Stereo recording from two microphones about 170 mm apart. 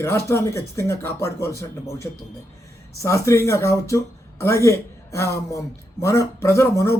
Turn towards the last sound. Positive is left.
turn(degrees=15)  # may be behind; listen again after turning